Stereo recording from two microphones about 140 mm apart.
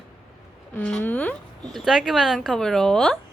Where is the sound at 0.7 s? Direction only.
15° left (ahead or behind).